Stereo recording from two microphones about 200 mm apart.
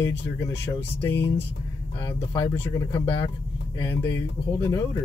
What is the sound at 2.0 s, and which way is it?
Speech, 25° left (ahead or behind).